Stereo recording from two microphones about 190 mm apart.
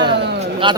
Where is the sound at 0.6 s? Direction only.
25° right (ahead or behind).